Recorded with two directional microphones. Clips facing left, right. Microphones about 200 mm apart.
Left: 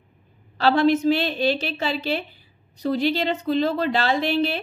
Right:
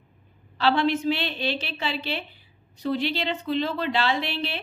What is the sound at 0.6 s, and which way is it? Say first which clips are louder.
A woman's voice: left 4 dB; 40° left (ahead or behind).